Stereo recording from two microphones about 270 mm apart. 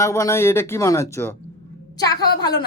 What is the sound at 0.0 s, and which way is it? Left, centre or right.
A woman's voice, centre.